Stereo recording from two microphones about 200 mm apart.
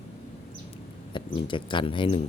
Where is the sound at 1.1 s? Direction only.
25° left (ahead or behind).